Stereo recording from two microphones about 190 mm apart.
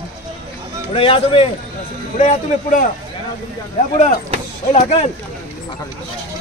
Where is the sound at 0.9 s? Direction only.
30° left (ahead or behind).